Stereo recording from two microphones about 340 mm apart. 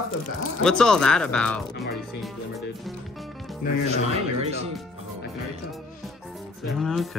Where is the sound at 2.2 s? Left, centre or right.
Centre.